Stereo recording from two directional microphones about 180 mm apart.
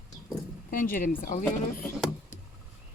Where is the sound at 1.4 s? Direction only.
10° left (ahead or behind).